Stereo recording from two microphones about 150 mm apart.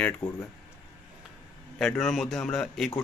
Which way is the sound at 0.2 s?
30° left (ahead or behind).